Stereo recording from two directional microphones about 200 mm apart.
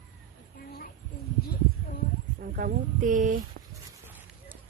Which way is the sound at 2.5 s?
40° right (ahead or behind).